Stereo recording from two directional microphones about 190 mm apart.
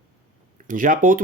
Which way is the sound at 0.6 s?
45° right (ahead or behind).